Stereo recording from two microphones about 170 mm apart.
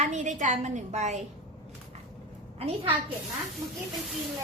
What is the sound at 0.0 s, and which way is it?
A woman's voice, 45° right (ahead or behind).